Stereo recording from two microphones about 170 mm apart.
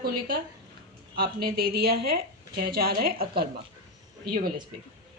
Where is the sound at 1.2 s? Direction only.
60° right (ahead or behind).